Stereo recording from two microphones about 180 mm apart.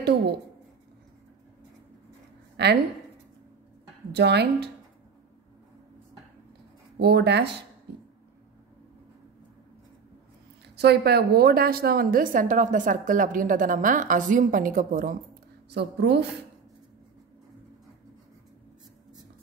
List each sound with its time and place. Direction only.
2.5 s a woman's voice: 70° right (ahead or behind)
4.1 s speech: 70° right (ahead or behind)
7.0 s speech: 65° right (ahead or behind)
10.8 s a woman's voice: 65° right (ahead or behind)
15.7 s speech: 70° right (ahead or behind)